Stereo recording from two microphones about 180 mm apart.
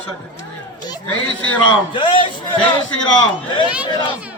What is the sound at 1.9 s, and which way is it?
Speech, 25° left (ahead or behind).